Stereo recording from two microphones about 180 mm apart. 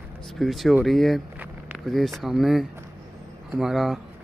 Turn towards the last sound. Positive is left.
turn(degrees=0)  # may be behind; listen again after turning